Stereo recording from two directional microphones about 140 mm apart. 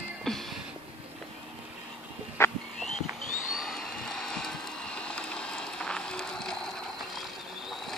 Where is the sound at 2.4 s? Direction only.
20° left (ahead or behind).